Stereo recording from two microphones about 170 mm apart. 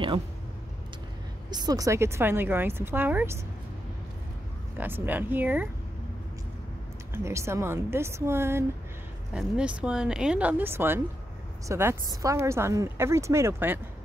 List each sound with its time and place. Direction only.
1.5 s speech: 25° right (ahead or behind)
4.7 s speech: 10° right (ahead or behind)
7.2 s speech: 15° right (ahead or behind)